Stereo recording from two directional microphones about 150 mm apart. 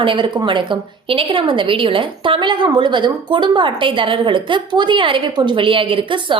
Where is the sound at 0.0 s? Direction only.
35° right (ahead or behind).